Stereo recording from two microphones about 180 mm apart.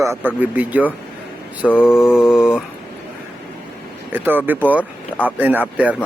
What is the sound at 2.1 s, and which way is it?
Speech, 5° right (ahead or behind).